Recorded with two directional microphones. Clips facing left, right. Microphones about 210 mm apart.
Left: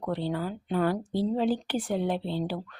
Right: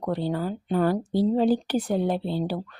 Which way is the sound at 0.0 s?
40° right (ahead or behind).